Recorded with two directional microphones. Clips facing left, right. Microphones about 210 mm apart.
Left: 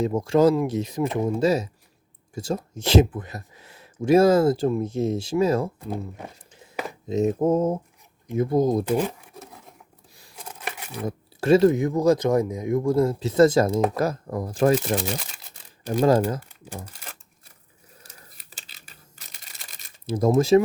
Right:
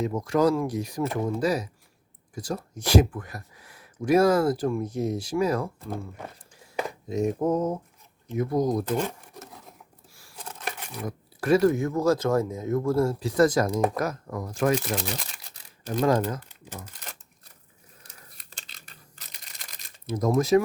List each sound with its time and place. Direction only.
0.0 s speech: 30° left (ahead or behind)
7.1 s speech: 25° left (ahead or behind)
8.9 s a sound: 5° left (ahead or behind)
11.0 s speech: 25° left (ahead or behind)
17.0 s a sound: 5° left (ahead or behind)
20.1 s speech: 30° left (ahead or behind)